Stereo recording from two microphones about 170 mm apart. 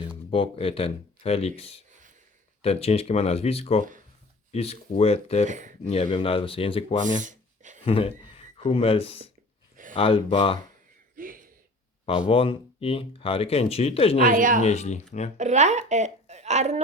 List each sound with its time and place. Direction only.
0.3 s speech: 30° left (ahead or behind)
5.5 s speech: 45° right (ahead or behind)
5.8 s speech: 35° left (ahead or behind)
7.0 s a sound: 50° right (ahead or behind)
7.9 s speech: 35° left (ahead or behind)
11.2 s a sound: 55° right (ahead or behind)
12.3 s speech: 30° left (ahead or behind)
14.2 s speech: 55° right (ahead or behind)
14.6 s speech: 40° left (ahead or behind)
15.4 s a woman's voice: 45° right (ahead or behind)